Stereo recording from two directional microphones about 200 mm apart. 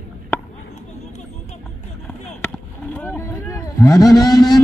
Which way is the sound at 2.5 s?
5° left (ahead or behind).